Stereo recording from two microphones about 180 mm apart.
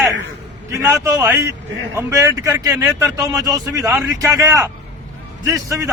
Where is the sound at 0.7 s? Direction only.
15° right (ahead or behind).